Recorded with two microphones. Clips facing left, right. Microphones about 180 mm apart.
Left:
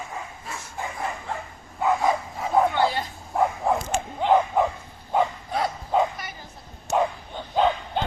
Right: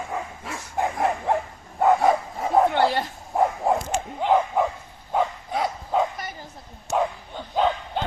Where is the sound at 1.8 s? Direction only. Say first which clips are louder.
Right 4 dB; 50° right (ahead or behind).